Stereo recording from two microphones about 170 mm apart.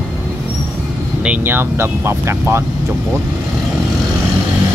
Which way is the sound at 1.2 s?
10° right (ahead or behind).